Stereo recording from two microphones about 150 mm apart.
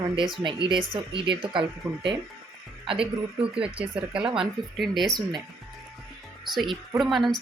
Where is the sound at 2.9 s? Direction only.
35° right (ahead or behind).